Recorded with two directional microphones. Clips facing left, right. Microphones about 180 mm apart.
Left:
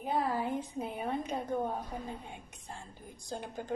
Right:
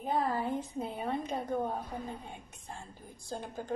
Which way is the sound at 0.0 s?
15° left (ahead or behind).